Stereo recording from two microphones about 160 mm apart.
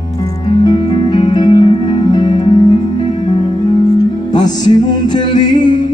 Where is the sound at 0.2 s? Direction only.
25° left (ahead or behind).